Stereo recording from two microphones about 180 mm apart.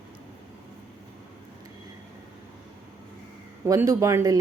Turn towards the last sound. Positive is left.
turn(degrees=-20)  # may be behind; listen again after turning